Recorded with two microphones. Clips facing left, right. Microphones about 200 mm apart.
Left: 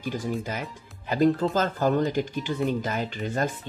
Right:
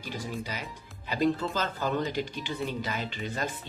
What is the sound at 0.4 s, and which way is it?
Speech, 50° left (ahead or behind).